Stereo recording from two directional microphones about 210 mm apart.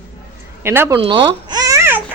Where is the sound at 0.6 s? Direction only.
10° right (ahead or behind).